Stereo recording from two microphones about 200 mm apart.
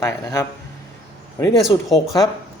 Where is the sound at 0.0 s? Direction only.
15° left (ahead or behind).